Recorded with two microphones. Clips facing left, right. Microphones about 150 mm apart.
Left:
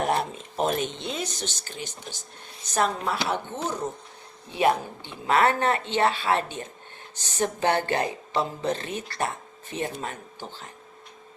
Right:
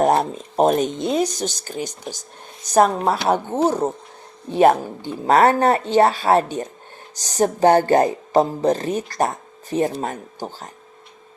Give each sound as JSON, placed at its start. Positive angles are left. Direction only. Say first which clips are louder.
{"t": 0.0, "sound": "speech", "louder": "right 8 dB", "side_deg": -40}